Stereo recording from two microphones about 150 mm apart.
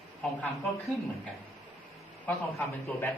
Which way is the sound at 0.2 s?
Centre (ahead or behind).